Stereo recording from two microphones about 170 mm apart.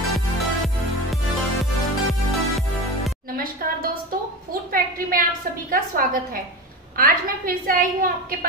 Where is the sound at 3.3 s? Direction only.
60° right (ahead or behind).